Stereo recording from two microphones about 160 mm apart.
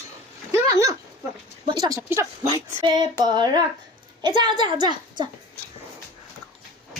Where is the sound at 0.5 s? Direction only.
20° right (ahead or behind).